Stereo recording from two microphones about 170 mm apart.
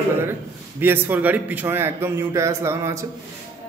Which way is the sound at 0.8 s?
10° right (ahead or behind).